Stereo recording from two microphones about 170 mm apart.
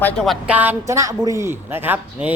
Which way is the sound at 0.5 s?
15° right (ahead or behind).